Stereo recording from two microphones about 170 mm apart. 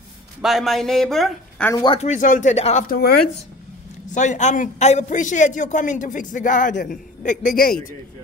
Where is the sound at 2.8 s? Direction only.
65° left (ahead or behind).